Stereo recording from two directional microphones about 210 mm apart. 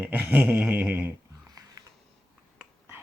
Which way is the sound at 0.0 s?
10° right (ahead or behind).